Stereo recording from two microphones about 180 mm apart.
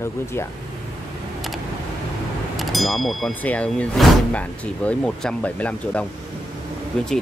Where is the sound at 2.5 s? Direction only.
Centre (ahead or behind).